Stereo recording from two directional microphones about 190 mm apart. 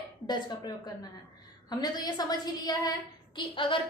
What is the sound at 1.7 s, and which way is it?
A woman's voice, 20° left (ahead or behind).